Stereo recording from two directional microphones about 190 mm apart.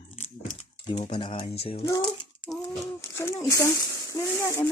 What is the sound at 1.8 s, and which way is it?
Speech, 20° left (ahead or behind).